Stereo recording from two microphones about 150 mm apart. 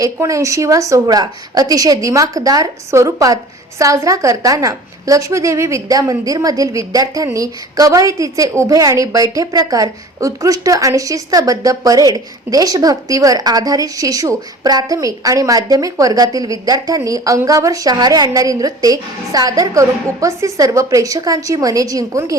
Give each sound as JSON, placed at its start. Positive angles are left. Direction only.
{"t": 0.0, "sound": "a woman's voice", "side_deg": -20}